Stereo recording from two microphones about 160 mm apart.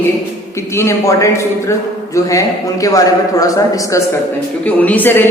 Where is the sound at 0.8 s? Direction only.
20° left (ahead or behind).